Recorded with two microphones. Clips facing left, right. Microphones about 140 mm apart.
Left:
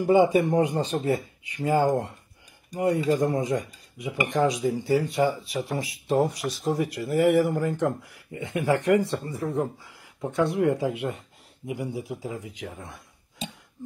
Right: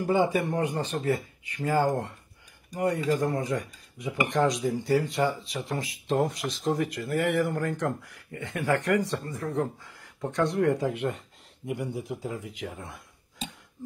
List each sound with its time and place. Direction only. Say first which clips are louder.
0.0 s a man's voice: left 5 dB; 15° left (ahead or behind)
4.3 s a man's voice: left 2 dB; 5° left (ahead or behind)